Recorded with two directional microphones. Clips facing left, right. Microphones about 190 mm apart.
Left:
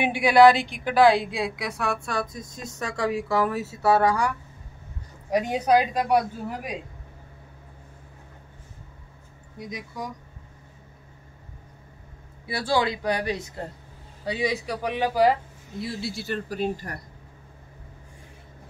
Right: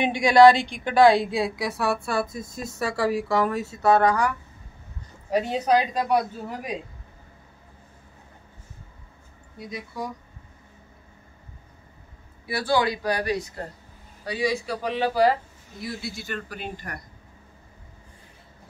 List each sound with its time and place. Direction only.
0.0 s a woman's voice: 5° left (ahead or behind)
5.3 s a woman's voice: 10° left (ahead or behind)
9.6 s a woman's voice: 15° left (ahead or behind)
12.4 s a woman's voice: 25° left (ahead or behind)
15.8 s speech: 30° left (ahead or behind)